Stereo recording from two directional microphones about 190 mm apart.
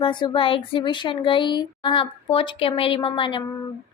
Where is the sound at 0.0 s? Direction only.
25° left (ahead or behind).